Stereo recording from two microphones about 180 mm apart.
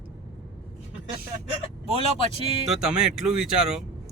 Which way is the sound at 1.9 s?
30° left (ahead or behind).